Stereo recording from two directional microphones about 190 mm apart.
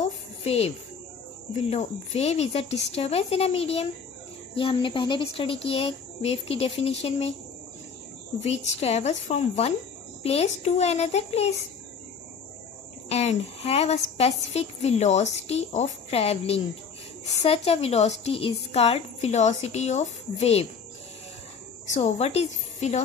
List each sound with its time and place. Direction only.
0.0 s a sound: 35° left (ahead or behind)
1.7 s a woman's voice: 35° left (ahead or behind)
8.4 s a woman's voice: 35° left (ahead or behind)
13.1 s a woman's voice: 35° left (ahead or behind)
21.8 s a woman's voice: 40° left (ahead or behind)